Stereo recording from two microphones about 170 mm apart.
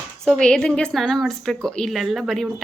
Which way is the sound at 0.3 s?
5° left (ahead or behind).